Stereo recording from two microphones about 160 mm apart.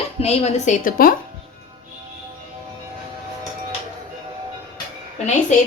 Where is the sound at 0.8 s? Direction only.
60° left (ahead or behind).